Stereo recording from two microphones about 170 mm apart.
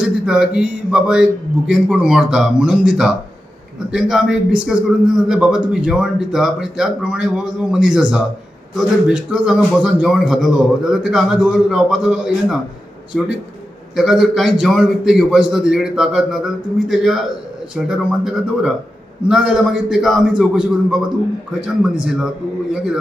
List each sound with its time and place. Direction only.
0.0 s a man's voice: 5° right (ahead or behind)
13.9 s a man's voice: centre (ahead or behind)